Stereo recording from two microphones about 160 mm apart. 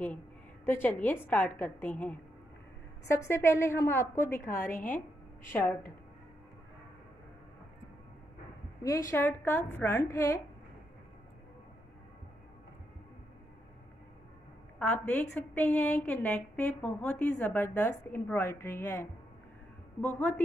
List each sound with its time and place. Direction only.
0.7 s a woman's voice: 10° left (ahead or behind)
8.8 s a woman's voice: 20° left (ahead or behind)
14.8 s a woman's voice: 10° left (ahead or behind)